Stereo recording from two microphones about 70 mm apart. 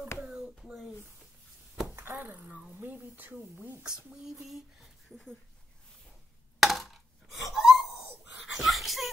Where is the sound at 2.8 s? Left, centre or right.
Right.